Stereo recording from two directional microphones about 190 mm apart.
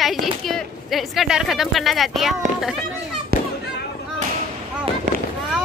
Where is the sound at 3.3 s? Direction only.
50° right (ahead or behind).